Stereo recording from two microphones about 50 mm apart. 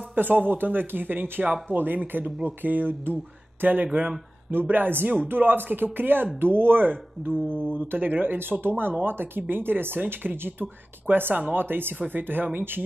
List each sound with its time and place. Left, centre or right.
0.1 s speech: right
7.3 s mantra: left
7.7 s speech: right